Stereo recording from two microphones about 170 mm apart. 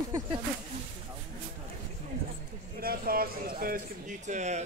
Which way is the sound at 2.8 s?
60° right (ahead or behind).